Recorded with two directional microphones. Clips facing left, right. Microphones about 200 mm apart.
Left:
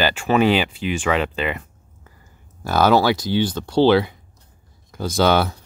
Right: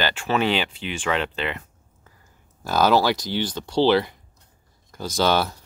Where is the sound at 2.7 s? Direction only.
60° left (ahead or behind).